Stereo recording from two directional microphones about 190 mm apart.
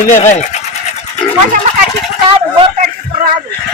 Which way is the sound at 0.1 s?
40° left (ahead or behind).